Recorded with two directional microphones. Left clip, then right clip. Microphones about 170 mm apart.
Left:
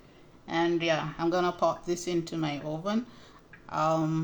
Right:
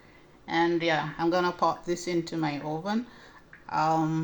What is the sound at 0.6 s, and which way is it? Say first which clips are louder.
Speech: right 1 dB; 25° right (ahead or behind).